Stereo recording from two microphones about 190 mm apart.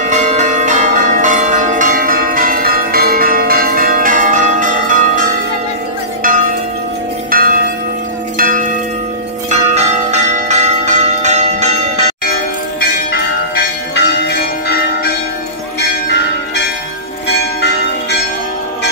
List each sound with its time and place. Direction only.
0.0 s change ringing: 35° right (ahead or behind)
6.2 s church bell: 45° right (ahead or behind)
8.4 s a sound: 45° right (ahead or behind)
9.5 s church bell: 35° right (ahead or behind)
13.1 s church bell: 60° left (ahead or behind)